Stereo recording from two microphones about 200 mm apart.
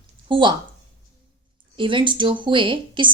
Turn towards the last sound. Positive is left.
turn(degrees=-25)  # may be behind; listen again after turning